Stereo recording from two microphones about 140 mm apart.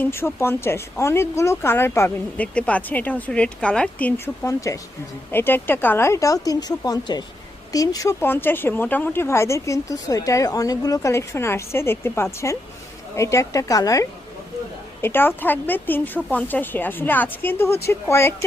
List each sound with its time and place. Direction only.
0.0 s speech: 15° left (ahead or behind)
4.4 s speech: 20° left (ahead or behind)